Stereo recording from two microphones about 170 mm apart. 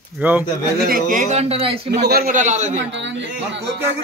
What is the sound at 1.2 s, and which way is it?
Speech, 40° right (ahead or behind).